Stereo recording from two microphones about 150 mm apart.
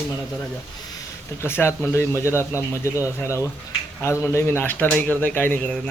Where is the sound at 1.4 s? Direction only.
15° left (ahead or behind).